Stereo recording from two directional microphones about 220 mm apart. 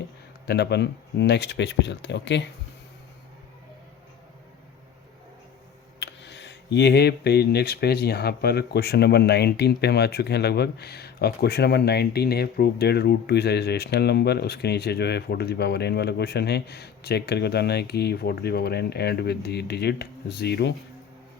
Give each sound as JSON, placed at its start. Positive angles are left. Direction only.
{"t": 0.4, "sound": "speech", "side_deg": 50}
{"t": 6.0, "sound": "speech", "side_deg": 50}